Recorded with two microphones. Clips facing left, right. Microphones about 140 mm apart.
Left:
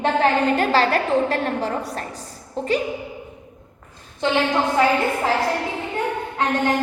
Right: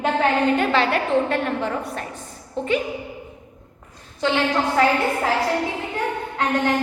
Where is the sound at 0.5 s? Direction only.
35° left (ahead or behind).